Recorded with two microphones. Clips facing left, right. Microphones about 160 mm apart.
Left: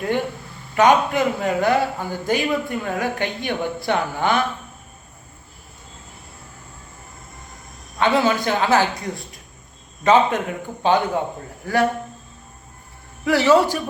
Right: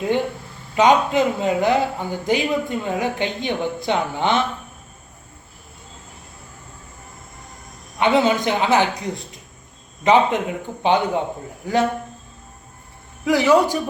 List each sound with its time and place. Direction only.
0.8 s a man's voice: 20° right (ahead or behind)
7.9 s a man's voice: 20° right (ahead or behind)
13.2 s a man's voice: 15° right (ahead or behind)